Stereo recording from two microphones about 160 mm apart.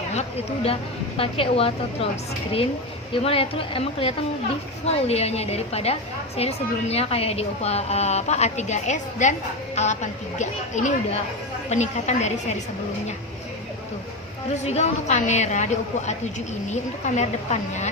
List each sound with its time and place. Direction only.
0.1 s a woman's voice: 40° left (ahead or behind)
3.1 s a woman's voice: 35° left (ahead or behind)
14.5 s a woman's voice: 45° left (ahead or behind)